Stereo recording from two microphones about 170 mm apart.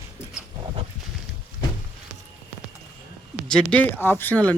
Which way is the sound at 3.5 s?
5° left (ahead or behind).